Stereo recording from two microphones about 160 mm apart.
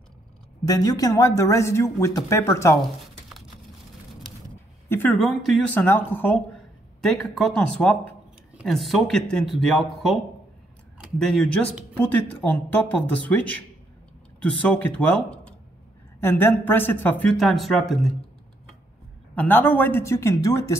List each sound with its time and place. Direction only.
0.7 s speech: 20° left (ahead or behind)
4.8 s a sound: 15° left (ahead or behind)
5.1 s speech: centre (ahead or behind)
5.8 s speech: 10° left (ahead or behind)
19.3 s speech: 10° left (ahead or behind)